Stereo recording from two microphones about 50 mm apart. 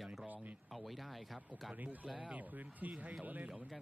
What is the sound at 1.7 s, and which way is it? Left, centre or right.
Speech, right.